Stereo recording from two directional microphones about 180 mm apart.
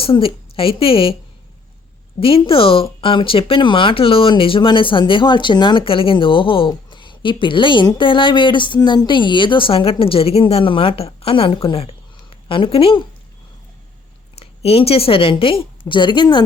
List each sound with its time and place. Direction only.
0.0 s a woman's voice: 30° left (ahead or behind)
2.2 s speech: 30° left (ahead or behind)
14.3 s a woman's voice: 35° left (ahead or behind)